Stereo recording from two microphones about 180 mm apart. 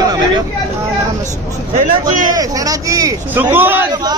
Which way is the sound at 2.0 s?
20° right (ahead or behind).